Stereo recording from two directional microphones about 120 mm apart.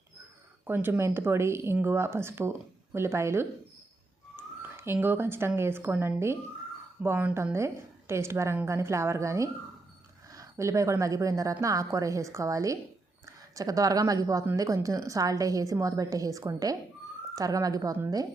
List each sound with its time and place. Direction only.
0.6 s a woman's voice: 15° right (ahead or behind)
4.8 s a woman's voice: 20° right (ahead or behind)
7.5 s a woman's voice: 25° right (ahead or behind)